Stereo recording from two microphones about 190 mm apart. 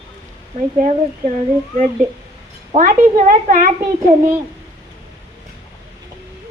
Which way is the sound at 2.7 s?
45° right (ahead or behind).